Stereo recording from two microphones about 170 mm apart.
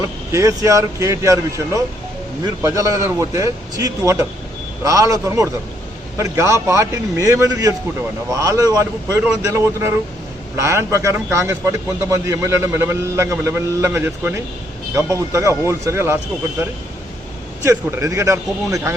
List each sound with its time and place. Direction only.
0.3 s a man's voice: 15° right (ahead or behind)
17.6 s a man's voice: 15° right (ahead or behind)